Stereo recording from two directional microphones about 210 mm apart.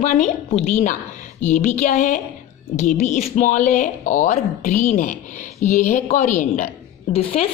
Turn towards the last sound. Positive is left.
turn(degrees=30)  # may be behind; listen again after turning